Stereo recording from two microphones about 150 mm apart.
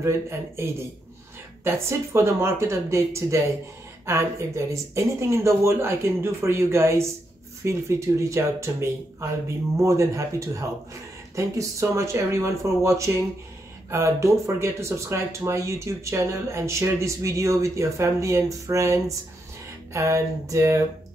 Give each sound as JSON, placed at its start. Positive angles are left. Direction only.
{"t": 0.0, "sound": "speech", "side_deg": -15}
{"t": 9.8, "sound": "speech", "side_deg": -20}